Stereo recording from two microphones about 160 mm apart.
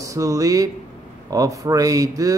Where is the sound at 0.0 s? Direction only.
20° right (ahead or behind).